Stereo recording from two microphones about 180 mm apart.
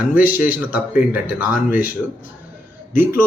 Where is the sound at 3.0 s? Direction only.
15° right (ahead or behind).